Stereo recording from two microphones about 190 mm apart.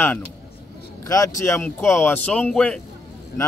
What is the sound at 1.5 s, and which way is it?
Speech, 10° left (ahead or behind).